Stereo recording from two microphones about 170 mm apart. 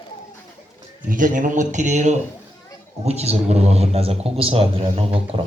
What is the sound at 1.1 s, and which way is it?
A man's voice, 50° right (ahead or behind).